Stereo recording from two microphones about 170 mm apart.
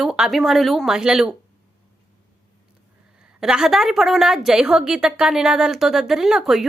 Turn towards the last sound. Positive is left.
turn(degrees=0)  # may be behind; listen again after turning